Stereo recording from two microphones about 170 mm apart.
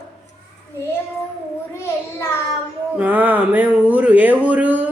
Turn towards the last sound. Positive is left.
turn(degrees=-10)  # may be behind; listen again after turning